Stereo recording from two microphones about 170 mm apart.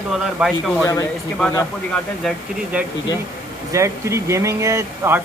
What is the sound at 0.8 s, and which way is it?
Speech, 20° left (ahead or behind).